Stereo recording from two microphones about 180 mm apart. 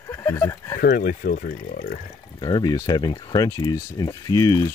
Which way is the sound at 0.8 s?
50° left (ahead or behind).